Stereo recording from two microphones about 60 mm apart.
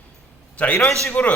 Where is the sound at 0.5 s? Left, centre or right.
Left.